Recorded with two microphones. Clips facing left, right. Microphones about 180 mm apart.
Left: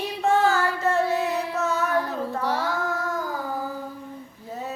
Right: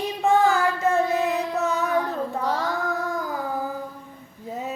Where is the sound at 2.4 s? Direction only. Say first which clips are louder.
Even; 10° left (ahead or behind).